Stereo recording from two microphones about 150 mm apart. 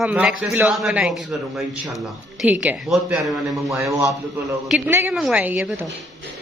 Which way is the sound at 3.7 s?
20° right (ahead or behind).